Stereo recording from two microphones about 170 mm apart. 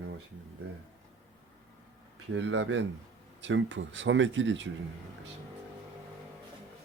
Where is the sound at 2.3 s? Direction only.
90° right.